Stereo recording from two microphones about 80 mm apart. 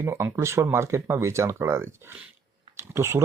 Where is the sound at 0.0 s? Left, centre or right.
Right.